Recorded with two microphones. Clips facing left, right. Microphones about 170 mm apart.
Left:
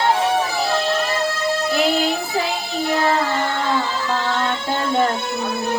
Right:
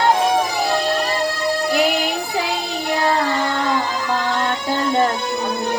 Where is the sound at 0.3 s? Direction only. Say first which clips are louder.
Right 1 dB; 15° right (ahead or behind).